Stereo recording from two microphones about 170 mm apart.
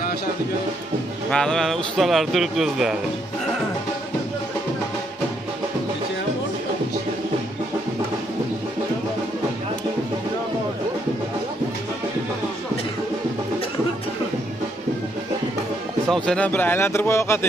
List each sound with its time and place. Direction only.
1.3 s a man's voice: 5° left (ahead or behind)
16.1 s speech: 5° left (ahead or behind)